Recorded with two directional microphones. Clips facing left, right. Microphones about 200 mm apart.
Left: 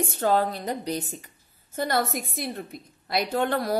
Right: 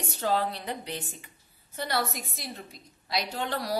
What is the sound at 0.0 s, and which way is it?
A woman's voice, 50° left (ahead or behind).